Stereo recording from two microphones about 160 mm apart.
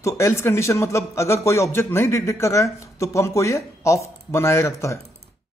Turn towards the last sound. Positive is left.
turn(degrees=15)  # may be behind; listen again after turning